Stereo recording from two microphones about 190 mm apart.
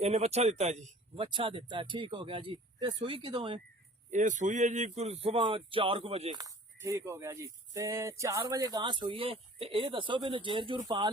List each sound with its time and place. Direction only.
0.0 s speech: 35° right (ahead or behind)
4.1 s speech: 40° right (ahead or behind)
6.3 s speech: 15° right (ahead or behind)